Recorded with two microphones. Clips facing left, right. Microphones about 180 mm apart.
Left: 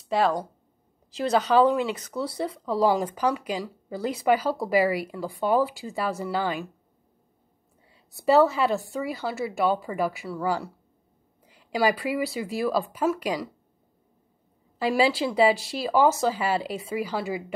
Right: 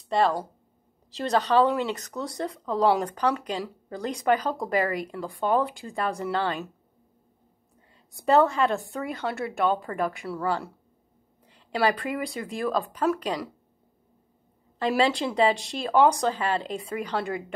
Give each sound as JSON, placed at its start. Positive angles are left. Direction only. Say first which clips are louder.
{"t": 0.1, "sound": "speech", "louder": "even", "side_deg": 0}
{"t": 7.9, "sound": "speech", "louder": "left 1 dB", "side_deg": 5}
{"t": 14.8, "sound": "speech", "louder": "left 1 dB", "side_deg": 5}